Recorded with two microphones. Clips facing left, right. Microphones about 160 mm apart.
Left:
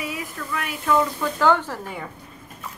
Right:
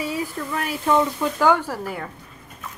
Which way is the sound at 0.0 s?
30° right (ahead or behind).